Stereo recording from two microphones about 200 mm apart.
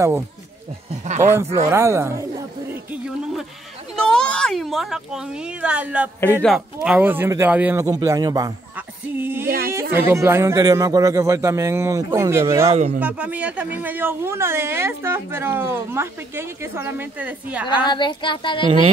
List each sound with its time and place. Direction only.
1.0 s speech: 35° right (ahead or behind)
1.3 s a woman's voice: 15° right (ahead or behind)
1.7 s a sound: 15° right (ahead or behind)
3.9 s a woman's voice: 5° left (ahead or behind); by 8.5 s 20° right (ahead or behind)
8.7 s a sound: 10° right (ahead or behind)
9.9 s a woman's voice: 10° right (ahead or behind)
12.7 s speech: 35° right (ahead or behind)
13.0 s a woman's voice: 5° right (ahead or behind)
17.8 s speech: 25° left (ahead or behind)